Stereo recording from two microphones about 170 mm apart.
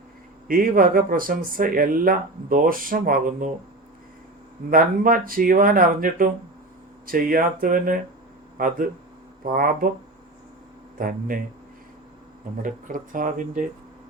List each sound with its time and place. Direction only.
0.4 s speech: 55° right (ahead or behind)
4.7 s speech: 55° right (ahead or behind)
10.9 s speech: 55° right (ahead or behind)
12.6 s speech: 50° right (ahead or behind)